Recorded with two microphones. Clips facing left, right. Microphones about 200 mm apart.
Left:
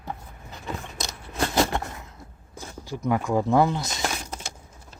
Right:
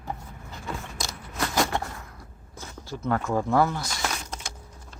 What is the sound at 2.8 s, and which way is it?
Speech, 15° left (ahead or behind).